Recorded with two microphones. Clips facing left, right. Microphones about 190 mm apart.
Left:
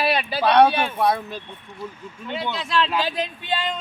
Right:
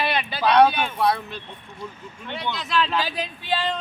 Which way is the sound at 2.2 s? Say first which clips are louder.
Left 2 dB; centre (ahead or behind).